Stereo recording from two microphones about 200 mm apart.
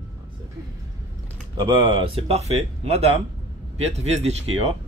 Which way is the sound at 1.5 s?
20° right (ahead or behind).